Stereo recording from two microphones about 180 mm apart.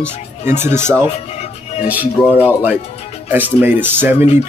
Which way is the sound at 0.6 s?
40° left (ahead or behind).